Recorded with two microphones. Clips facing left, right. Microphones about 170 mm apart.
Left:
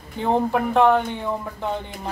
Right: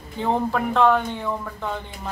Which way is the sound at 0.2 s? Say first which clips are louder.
Left 2 dB; 15° left (ahead or behind).